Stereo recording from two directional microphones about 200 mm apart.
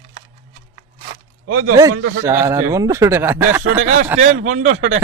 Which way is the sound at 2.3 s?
15° right (ahead or behind).